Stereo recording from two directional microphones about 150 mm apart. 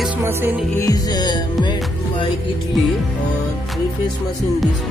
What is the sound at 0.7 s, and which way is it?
Music, 25° left (ahead or behind).